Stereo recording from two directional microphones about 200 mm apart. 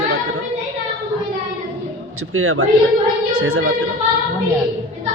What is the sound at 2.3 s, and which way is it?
A woman's voice, 90° right.